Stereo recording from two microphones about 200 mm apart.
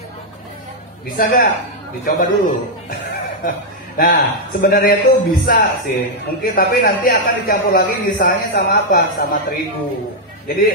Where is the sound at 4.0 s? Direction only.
45° left (ahead or behind).